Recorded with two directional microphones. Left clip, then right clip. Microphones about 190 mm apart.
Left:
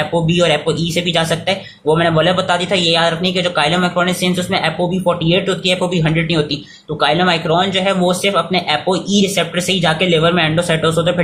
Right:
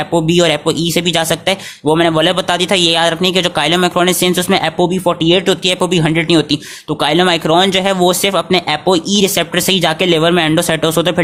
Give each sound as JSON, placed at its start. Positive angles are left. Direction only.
{"t": 0.1, "sound": "speech", "side_deg": -50}